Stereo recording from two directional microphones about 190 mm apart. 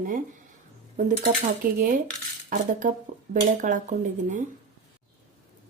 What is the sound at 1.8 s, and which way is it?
A woman's voice, 45° right (ahead or behind).